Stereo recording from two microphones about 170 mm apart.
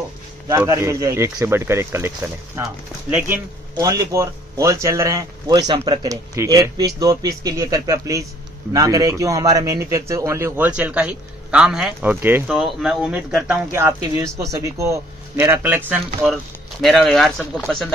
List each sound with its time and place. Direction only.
0.5 s a man's voice: 15° right (ahead or behind)
16.8 s speech: centre (ahead or behind)